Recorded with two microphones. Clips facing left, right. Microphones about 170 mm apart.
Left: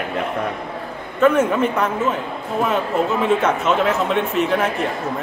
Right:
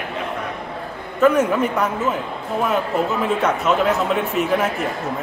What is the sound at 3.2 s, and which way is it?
A man's voice, centre (ahead or behind).